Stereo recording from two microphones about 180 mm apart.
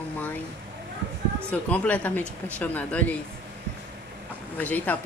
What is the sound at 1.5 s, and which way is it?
Speech, 10° left (ahead or behind).